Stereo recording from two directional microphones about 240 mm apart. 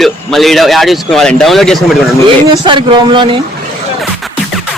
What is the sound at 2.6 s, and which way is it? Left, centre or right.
Speech, centre.